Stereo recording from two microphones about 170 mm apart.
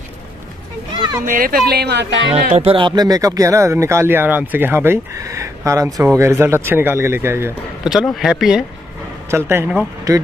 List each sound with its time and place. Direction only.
1.2 s speech: 55° right (ahead or behind); by 2.1 s 85° right
2.5 s speech: 35° right (ahead or behind); by 7.5 s 15° right (ahead or behind)
7.8 s speech: 5° right (ahead or behind)
10.1 s speech: 20° right (ahead or behind)